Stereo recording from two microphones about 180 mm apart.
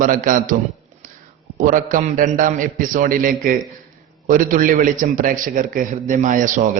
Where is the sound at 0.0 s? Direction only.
50° right (ahead or behind).